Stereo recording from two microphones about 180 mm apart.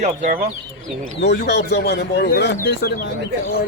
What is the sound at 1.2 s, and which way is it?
Speech, 70° left (ahead or behind).